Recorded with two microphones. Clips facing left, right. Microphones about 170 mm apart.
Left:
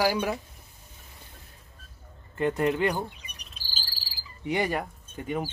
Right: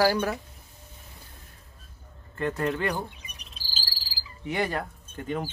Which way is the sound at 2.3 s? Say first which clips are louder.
Left 3 dB; 15° left (ahead or behind).